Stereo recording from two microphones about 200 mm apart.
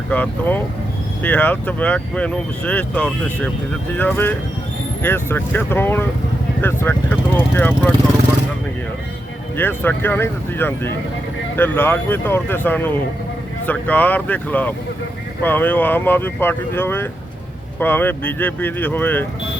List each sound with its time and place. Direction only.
0.1 s speech: 10° left (ahead or behind)
9.6 s speech: 10° left (ahead or behind)